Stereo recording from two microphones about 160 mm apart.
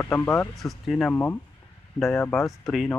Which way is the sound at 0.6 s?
Centre (ahead or behind).